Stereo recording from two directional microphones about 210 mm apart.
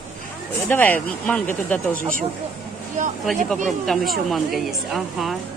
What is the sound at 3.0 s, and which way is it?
Speech, 35° right (ahead or behind).